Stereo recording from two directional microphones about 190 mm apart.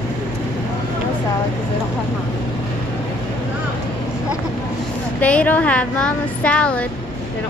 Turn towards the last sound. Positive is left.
turn(degrees=5)  # may be behind; listen again after turning